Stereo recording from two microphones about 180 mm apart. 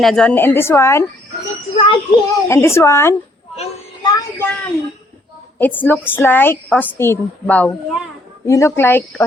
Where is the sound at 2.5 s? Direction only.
15° left (ahead or behind).